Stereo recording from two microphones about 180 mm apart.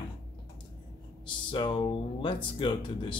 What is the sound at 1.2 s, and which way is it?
Speech, 25° left (ahead or behind).